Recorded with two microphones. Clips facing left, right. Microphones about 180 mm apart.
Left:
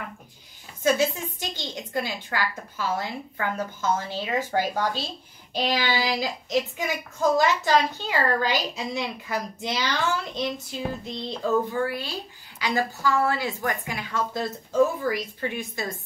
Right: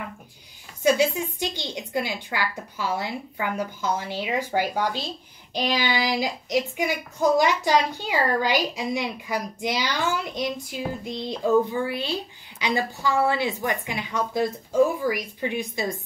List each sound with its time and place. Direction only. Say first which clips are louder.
0.9 s child singing: right 2 dB; 15° right (ahead or behind)